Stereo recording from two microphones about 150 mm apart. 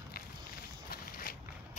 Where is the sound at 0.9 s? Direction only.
85° left.